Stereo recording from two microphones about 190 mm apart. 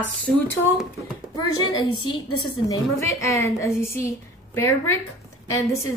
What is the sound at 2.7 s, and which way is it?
A woman's voice, 15° left (ahead or behind).